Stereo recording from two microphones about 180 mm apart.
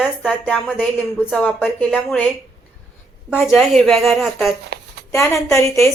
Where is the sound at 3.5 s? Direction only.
Centre (ahead or behind).